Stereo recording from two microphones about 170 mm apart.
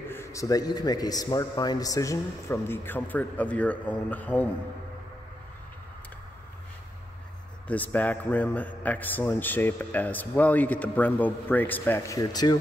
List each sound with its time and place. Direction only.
0.1 s a man's voice: 15° left (ahead or behind)
7.6 s a man's voice: 10° left (ahead or behind)